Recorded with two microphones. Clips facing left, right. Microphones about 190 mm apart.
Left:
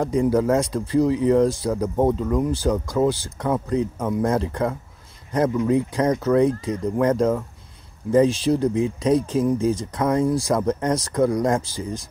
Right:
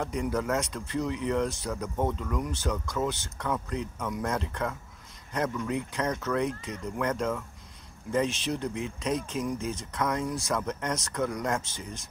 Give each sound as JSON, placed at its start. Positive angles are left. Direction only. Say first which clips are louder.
{"t": 0.0, "sound": "speech", "louder": "left 10 dB", "side_deg": 35}